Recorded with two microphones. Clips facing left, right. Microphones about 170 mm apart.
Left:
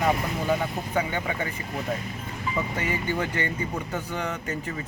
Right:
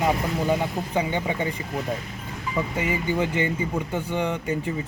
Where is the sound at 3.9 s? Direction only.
25° right (ahead or behind).